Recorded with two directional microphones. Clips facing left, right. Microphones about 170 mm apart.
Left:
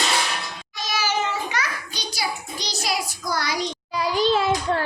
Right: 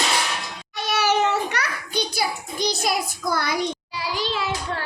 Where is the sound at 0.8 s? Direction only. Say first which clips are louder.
Right 4 dB; 65° right (ahead or behind).